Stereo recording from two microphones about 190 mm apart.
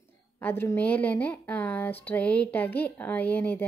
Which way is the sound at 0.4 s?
10° left (ahead or behind).